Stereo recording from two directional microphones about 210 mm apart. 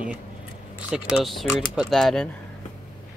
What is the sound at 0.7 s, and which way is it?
Speech, 5° right (ahead or behind).